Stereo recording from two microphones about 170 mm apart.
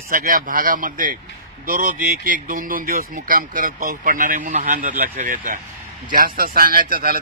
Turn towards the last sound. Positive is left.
turn(degrees=-60)  # may be behind; listen again after turning